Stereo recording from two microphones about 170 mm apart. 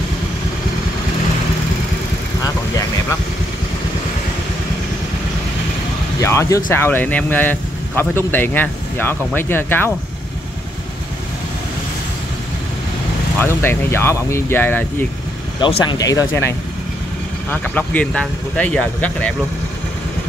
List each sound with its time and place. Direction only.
6.2 s speech: 15° left (ahead or behind)
13.4 s speech: 15° left (ahead or behind)
15.6 s speech: 25° left (ahead or behind); by 19.3 s 5° left (ahead or behind)